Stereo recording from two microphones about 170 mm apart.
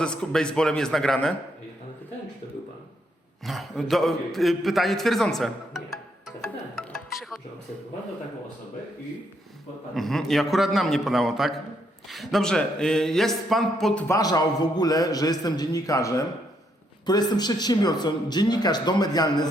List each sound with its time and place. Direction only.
0.0 s a man's voice: 5° left (ahead or behind)
3.4 s a man's voice: centre (ahead or behind)
9.9 s a man's voice: centre (ahead or behind)
14.1 s a man's voice: 20° left (ahead or behind)